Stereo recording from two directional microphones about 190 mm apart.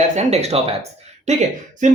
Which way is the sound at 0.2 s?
35° right (ahead or behind).